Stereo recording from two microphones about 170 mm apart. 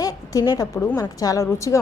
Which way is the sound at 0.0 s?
20° left (ahead or behind).